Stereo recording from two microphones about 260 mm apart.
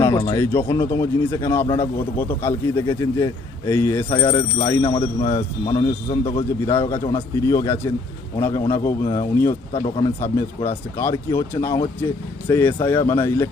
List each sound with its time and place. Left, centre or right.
0.0 s speech: centre
6.7 s speech: centre
10.2 s speech: centre